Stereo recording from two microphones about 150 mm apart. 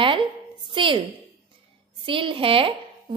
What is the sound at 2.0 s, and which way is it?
Speech, 35° right (ahead or behind).